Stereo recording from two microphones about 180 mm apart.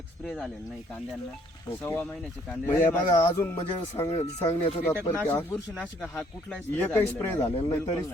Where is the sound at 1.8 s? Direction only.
10° left (ahead or behind).